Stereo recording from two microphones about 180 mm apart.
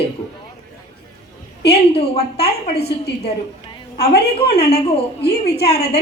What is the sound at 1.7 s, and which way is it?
Speech, 35° left (ahead or behind).